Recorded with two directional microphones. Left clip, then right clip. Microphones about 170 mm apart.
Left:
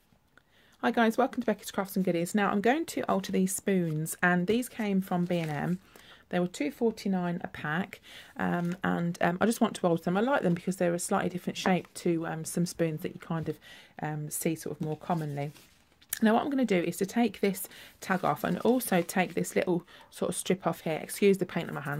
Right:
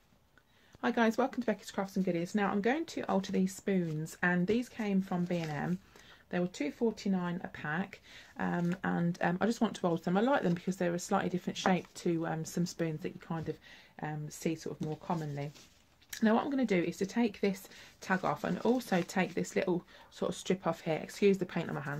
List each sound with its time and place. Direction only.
0.7 s speech: 40° left (ahead or behind)